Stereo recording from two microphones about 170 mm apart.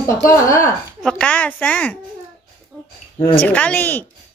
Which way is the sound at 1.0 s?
5° left (ahead or behind).